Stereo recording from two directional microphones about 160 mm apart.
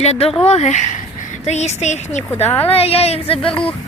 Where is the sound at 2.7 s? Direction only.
40° left (ahead or behind).